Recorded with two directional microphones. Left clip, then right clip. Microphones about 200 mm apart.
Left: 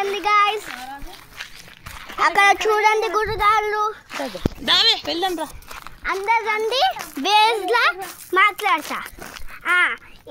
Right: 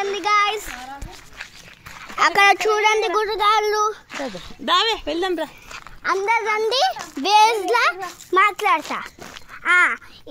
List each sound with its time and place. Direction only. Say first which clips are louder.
0.1 s child singing: left 1 dB; centre (ahead or behind)
2.1 s speech: right 1 dB; 25° right (ahead or behind)
2.7 s speech: even; 10° right (ahead or behind)
3.6 s a woman's voice: right 2 dB; 25° right (ahead or behind); by 5.5 s 45° right (ahead or behind)
6.2 s speech: left 2 dB; 20° right (ahead or behind)
7.2 s speech: right 2 dB; centre (ahead or behind)
9.6 s speech: right 2 dB; 30° right (ahead or behind)